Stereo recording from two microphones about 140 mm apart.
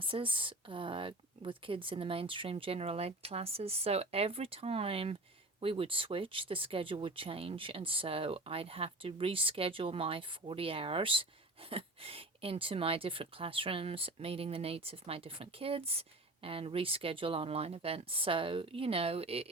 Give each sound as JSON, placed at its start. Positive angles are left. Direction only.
{"t": 0.0, "sound": "speech", "side_deg": -40}